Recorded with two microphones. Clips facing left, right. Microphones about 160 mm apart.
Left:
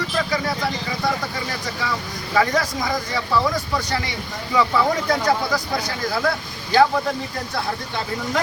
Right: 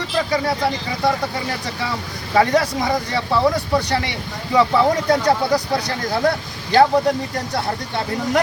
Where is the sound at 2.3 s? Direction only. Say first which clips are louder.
Right 4 dB; 30° right (ahead or behind).